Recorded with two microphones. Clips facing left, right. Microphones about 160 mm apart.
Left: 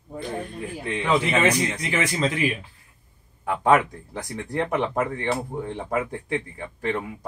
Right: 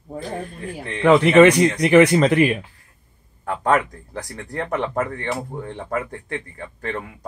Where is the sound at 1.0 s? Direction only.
65° right (ahead or behind).